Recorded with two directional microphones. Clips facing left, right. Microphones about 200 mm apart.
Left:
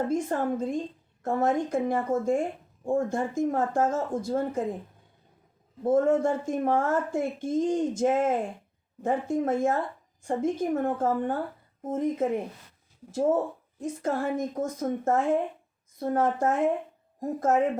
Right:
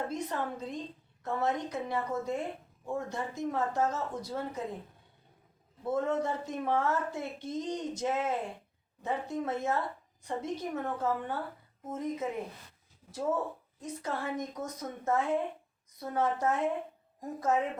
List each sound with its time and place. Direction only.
0.1 s speech: 50° left (ahead or behind)
5.8 s speech: 50° left (ahead or behind)
13.1 s speech: 50° left (ahead or behind)